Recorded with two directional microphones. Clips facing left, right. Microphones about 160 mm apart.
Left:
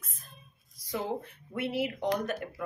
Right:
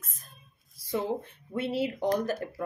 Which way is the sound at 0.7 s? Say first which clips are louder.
Right 4 dB; 25° right (ahead or behind).